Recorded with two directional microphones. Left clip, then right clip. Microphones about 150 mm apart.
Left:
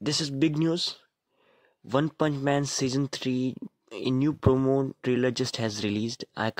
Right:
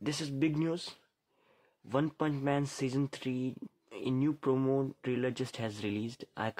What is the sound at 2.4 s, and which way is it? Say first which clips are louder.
Speech: left 7 dB; 40° left (ahead or behind).